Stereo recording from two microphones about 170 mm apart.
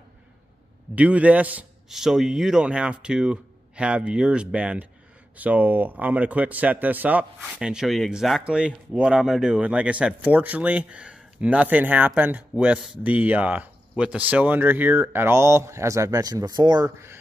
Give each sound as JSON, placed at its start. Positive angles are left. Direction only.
{"t": 0.9, "sound": "a man's voice", "side_deg": -10}